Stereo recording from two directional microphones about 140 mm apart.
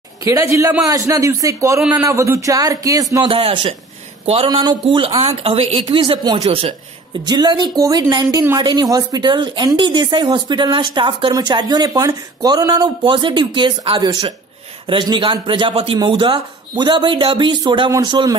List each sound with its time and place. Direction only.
0.2 s speech: 25° right (ahead or behind)
1.8 s speech: 5° right (ahead or behind)
2.0 s speech: 20° right (ahead or behind)
3.3 s speech: 40° right (ahead or behind)
6.4 s a man's voice: 40° right (ahead or behind)
7.2 s speech: 30° right (ahead or behind)